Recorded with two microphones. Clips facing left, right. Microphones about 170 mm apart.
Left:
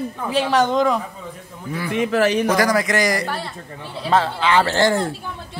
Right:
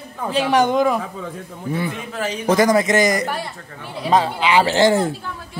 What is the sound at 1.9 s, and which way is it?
Speech, 80° left.